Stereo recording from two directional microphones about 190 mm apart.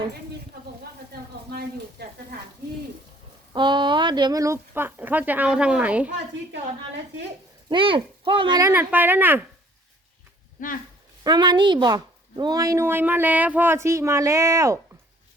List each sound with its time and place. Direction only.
1.1 s a sound: 55° right (ahead or behind)
3.5 s speech: 25° right (ahead or behind); by 6.1 s 5° right (ahead or behind)
7.7 s speech: 25° right (ahead or behind)
8.7 s speech: 10° right (ahead or behind)
10.6 s speech: 45° left (ahead or behind)
11.2 s speech: 20° right (ahead or behind)